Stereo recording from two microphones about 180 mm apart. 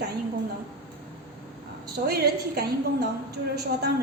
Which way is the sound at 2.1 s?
60° right (ahead or behind).